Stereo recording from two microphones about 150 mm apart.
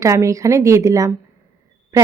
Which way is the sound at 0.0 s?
20° right (ahead or behind).